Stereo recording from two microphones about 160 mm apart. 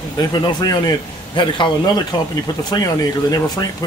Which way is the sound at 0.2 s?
25° left (ahead or behind).